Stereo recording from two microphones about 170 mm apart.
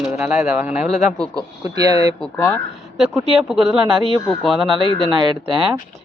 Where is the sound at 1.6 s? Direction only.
20° right (ahead or behind).